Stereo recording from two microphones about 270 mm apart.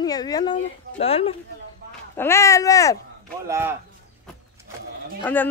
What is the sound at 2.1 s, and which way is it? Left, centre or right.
Speech, centre.